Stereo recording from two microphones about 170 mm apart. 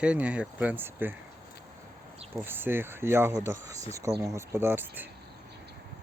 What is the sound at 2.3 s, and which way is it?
Speech, 10° right (ahead or behind).